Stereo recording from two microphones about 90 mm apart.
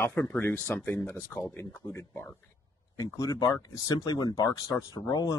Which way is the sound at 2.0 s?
30° left (ahead or behind).